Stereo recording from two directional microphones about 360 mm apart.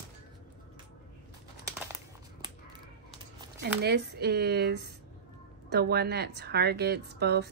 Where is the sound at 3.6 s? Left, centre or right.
Right.